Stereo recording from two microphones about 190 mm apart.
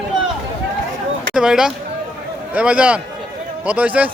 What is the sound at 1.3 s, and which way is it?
Speech, 5° right (ahead or behind).